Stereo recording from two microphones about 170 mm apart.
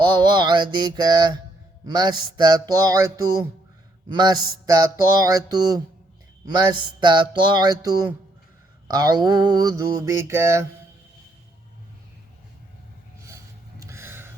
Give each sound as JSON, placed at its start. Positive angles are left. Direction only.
{"t": 0.0, "sound": "mantra", "side_deg": -25}
{"t": 4.1, "sound": "mantra", "side_deg": -25}
{"t": 13.2, "sound": "a sound", "side_deg": -15}